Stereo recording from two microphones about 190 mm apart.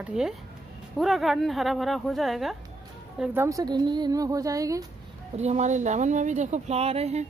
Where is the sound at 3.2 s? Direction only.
15° right (ahead or behind).